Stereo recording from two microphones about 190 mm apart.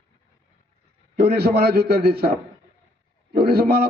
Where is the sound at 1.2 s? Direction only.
55° right (ahead or behind).